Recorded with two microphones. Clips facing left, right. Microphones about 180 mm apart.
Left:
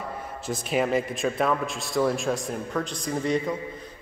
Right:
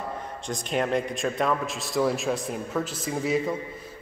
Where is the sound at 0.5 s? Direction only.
5° left (ahead or behind).